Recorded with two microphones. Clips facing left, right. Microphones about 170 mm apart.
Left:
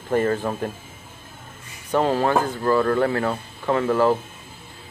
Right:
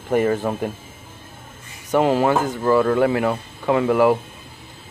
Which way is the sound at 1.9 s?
15° right (ahead or behind).